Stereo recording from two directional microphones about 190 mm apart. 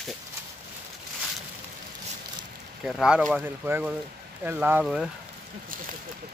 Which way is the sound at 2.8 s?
5° right (ahead or behind).